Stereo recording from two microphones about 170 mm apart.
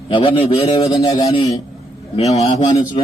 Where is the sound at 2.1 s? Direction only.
40° left (ahead or behind).